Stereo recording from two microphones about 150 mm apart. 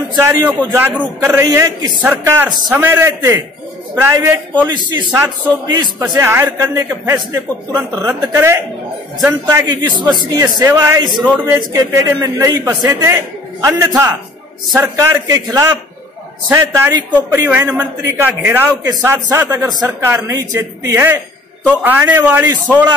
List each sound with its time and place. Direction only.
0.1 s a man's voice: 25° right (ahead or behind)
0.7 s a man's voice: 10° right (ahead or behind)
4.8 s a man's voice: 30° right (ahead or behind)
5.1 s a man's voice: 15° right (ahead or behind)
9.7 s a man's voice: 30° right (ahead or behind)
16.4 s a man's voice: 15° right (ahead or behind)